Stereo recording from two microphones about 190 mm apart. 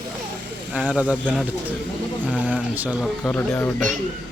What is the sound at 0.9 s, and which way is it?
Speech, 5° right (ahead or behind).